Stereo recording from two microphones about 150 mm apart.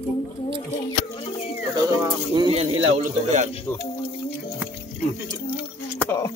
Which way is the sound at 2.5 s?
45° right (ahead or behind).